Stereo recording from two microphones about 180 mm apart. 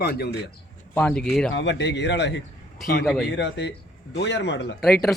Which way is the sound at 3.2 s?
75° left (ahead or behind).